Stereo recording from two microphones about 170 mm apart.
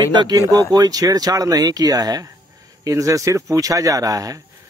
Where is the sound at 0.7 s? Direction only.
20° right (ahead or behind).